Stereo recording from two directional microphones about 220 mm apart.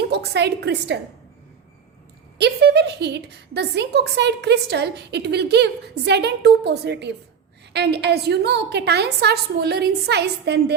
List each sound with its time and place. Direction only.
0.1 s a woman's voice: 50° right (ahead or behind)
2.4 s a woman's voice: 50° right (ahead or behind)